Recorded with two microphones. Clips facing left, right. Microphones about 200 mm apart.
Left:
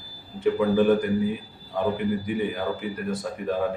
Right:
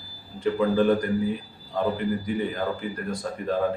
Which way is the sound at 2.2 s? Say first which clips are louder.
Even; 10° left (ahead or behind).